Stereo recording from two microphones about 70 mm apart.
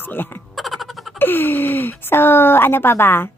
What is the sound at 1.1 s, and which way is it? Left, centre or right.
A woman's voice, left.